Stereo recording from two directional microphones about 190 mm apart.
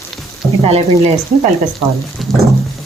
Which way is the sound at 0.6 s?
35° right (ahead or behind).